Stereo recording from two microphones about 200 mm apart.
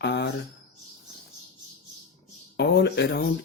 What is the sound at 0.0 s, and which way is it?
Speech, 60° left (ahead or behind).